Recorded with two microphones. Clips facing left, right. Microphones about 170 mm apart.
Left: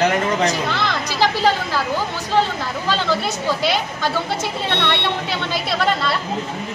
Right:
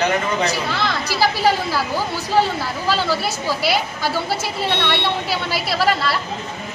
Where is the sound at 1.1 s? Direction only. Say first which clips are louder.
Even; 10° right (ahead or behind).